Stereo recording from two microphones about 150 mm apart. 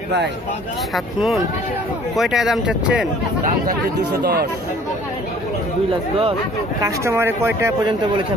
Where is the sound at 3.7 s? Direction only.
90° right.